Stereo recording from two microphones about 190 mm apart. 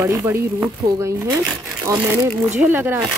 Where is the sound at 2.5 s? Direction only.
10° right (ahead or behind).